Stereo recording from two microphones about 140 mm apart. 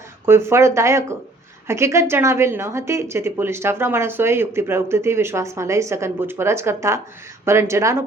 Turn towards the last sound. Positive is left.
turn(degrees=-20)  # may be behind; listen again after turning